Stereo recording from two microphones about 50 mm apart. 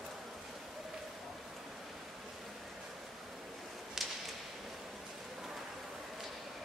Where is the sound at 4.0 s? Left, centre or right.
Centre.